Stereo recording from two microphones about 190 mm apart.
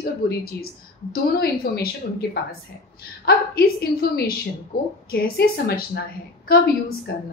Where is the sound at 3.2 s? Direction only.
55° left (ahead or behind).